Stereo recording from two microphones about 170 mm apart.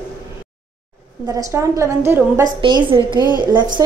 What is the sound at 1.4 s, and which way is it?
A woman's voice, 15° right (ahead or behind).